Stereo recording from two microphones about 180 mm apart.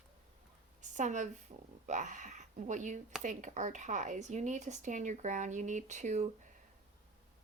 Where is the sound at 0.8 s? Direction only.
40° right (ahead or behind).